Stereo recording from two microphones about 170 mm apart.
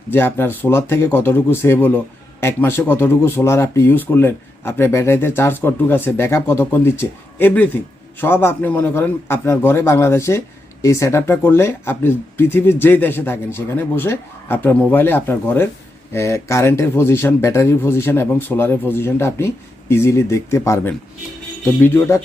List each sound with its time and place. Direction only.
0.1 s a man's voice: 15° left (ahead or behind)